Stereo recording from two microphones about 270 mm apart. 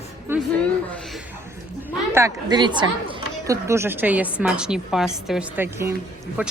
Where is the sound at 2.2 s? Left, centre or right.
Centre.